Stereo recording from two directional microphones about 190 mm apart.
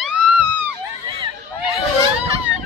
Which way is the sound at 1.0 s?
25° right (ahead or behind).